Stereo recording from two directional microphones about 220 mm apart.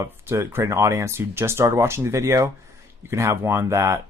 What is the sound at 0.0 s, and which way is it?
Speech, 10° right (ahead or behind).